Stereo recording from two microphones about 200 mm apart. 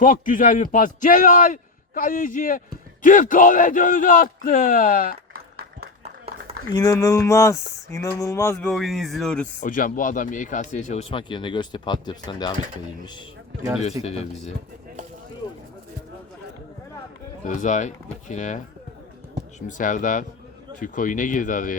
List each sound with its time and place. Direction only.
0.0 s speech: 45° left (ahead or behind)
6.7 s speech: 20° left (ahead or behind)
8.7 s speech: centre (ahead or behind)
9.6 s speech: 40° left (ahead or behind)
11.1 s speech: 25° left (ahead or behind)
14.0 s speech: 30° left (ahead or behind)
17.4 s speech: 40° left (ahead or behind)